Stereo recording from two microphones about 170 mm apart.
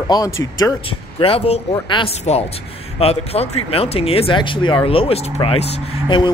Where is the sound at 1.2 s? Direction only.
35° left (ahead or behind).